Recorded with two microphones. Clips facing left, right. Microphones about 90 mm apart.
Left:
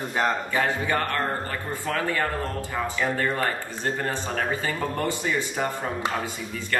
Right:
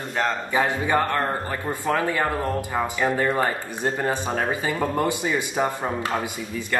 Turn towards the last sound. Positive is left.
turn(degrees=-15)  # may be behind; listen again after turning